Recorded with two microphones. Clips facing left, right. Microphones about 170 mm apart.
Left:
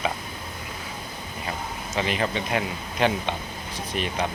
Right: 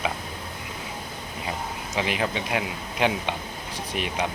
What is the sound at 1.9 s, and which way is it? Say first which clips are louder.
Speech: left 1 dB; 10° right (ahead or behind).